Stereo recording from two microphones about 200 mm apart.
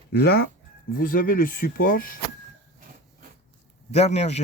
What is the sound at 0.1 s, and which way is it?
Speech, 50° left (ahead or behind).